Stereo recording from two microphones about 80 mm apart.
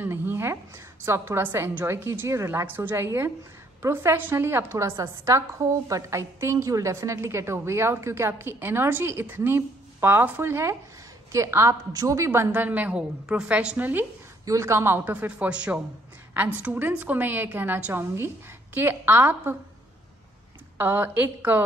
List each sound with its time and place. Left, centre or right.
0.0 s a sound: right
1.0 s a woman's voice: right
12.3 s a woman's voice: right
13.7 s a woman's voice: right
14.4 s a woman's voice: right
15.1 s a woman's voice: centre
20.7 s a woman's voice: right